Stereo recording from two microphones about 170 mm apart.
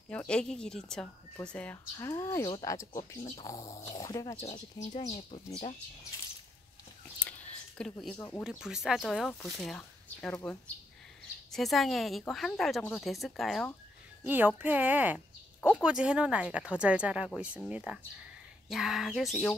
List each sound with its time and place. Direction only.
0.1 s a woman's voice: 5° left (ahead or behind)
2.0 s speech: 20° left (ahead or behind)
4.9 s speech: 40° left (ahead or behind)
7.2 s a sound: 5° left (ahead or behind)
8.2 s speech: 15° left (ahead or behind)
8.5 s a woman's voice: 5° right (ahead or behind)
14.2 s a woman's voice: 10° right (ahead or behind)